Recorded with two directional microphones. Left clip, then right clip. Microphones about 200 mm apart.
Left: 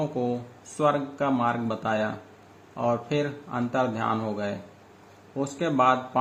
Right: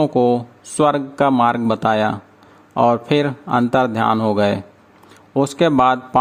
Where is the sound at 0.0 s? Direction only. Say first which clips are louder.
Right 13 dB; 50° right (ahead or behind).